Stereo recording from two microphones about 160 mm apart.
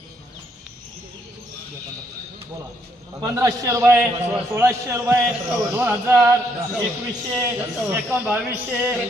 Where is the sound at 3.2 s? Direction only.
20° right (ahead or behind).